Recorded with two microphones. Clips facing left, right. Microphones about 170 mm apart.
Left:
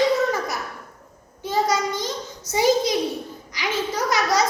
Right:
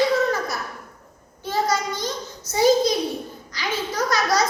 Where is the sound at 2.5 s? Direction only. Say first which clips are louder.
Right 2 dB; 15° left (ahead or behind).